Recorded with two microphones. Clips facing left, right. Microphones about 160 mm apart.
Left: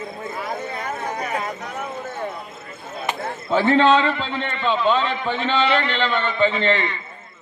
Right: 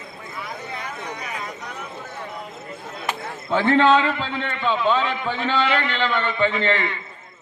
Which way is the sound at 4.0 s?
10° right (ahead or behind).